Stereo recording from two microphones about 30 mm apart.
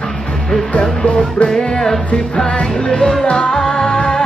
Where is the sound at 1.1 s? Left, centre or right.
Left.